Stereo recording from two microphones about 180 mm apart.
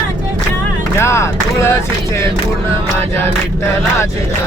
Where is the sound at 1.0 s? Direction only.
15° left (ahead or behind).